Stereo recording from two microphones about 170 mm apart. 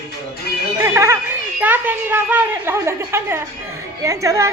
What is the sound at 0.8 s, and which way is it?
A woman's voice, 15° right (ahead or behind).